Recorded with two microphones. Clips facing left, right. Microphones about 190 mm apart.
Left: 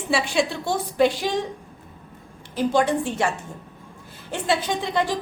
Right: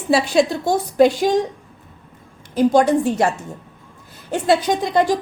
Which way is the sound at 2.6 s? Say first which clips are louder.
Right 6 dB; 40° right (ahead or behind).